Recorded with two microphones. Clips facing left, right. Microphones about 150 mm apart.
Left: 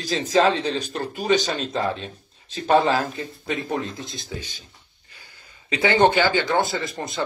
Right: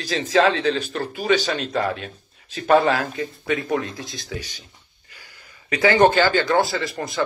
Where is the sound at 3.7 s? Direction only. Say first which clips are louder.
Right 3 dB; 20° left (ahead or behind).